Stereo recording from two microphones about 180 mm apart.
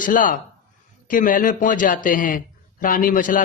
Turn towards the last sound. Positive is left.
turn(degrees=45)  # may be behind; listen again after turning